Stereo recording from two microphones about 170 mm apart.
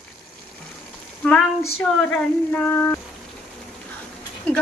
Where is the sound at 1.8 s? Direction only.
5° left (ahead or behind).